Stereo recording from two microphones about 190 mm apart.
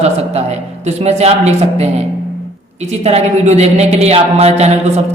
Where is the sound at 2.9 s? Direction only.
35° right (ahead or behind).